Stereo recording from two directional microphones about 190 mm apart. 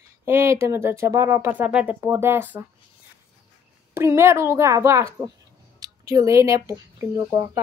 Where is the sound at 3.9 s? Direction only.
15° right (ahead or behind).